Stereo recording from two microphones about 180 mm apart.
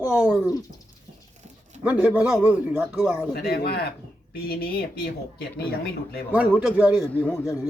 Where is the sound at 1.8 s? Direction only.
5° right (ahead or behind).